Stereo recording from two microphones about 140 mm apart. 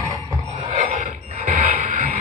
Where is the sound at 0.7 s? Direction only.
65° right (ahead or behind).